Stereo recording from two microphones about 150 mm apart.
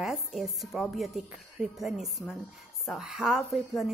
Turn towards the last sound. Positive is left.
turn(degrees=0)  # may be behind; listen again after turning